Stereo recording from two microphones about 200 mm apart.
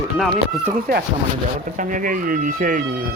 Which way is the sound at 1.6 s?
40° right (ahead or behind).